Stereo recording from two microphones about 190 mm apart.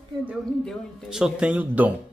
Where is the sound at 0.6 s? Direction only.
5° right (ahead or behind).